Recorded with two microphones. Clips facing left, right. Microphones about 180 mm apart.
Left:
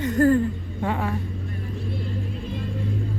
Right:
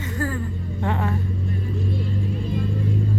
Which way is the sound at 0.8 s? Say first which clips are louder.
Right 1 dB; 10° left (ahead or behind).